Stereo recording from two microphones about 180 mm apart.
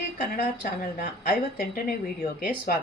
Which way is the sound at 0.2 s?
55° left (ahead or behind).